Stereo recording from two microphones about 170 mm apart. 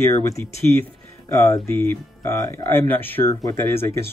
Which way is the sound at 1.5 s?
15° left (ahead or behind).